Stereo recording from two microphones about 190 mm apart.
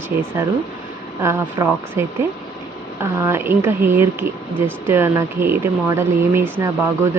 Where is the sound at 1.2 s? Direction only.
15° right (ahead or behind).